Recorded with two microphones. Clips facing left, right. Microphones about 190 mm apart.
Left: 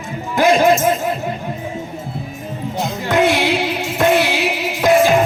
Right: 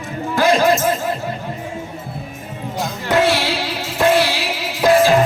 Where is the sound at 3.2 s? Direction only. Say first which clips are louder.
Left 2 dB; 20° left (ahead or behind).